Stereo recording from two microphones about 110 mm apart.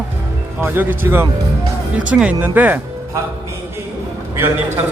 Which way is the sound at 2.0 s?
10° right (ahead or behind).